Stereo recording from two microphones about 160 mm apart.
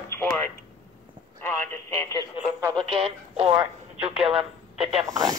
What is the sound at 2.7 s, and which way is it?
Speech, 35° right (ahead or behind).